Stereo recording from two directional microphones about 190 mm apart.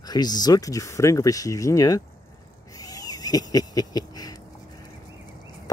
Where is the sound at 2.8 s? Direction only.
20° left (ahead or behind).